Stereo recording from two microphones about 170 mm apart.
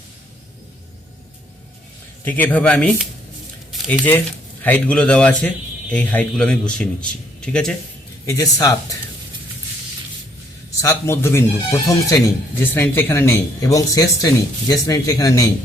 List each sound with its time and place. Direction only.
2.2 s speech: 10° left (ahead or behind)
3.7 s squish: centre (ahead or behind)
4.6 s a man's voice: 10° left (ahead or behind)
8.3 s speech: 20° left (ahead or behind)
10.8 s speech: 15° left (ahead or behind)